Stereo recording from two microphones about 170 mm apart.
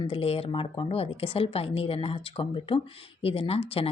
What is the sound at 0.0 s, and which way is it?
Speech, 35° left (ahead or behind).